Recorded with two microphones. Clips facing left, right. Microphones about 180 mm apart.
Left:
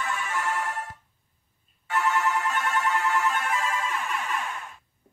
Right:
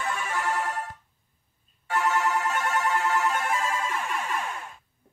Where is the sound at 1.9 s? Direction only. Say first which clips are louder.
Even; 40° right (ahead or behind).